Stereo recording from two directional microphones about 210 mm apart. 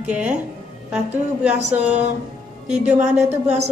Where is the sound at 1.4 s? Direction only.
5° right (ahead or behind).